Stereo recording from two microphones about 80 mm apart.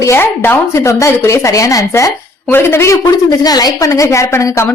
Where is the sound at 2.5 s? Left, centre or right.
Left.